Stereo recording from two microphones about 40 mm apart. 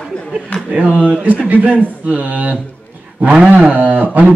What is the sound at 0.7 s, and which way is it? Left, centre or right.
A man's voice, right.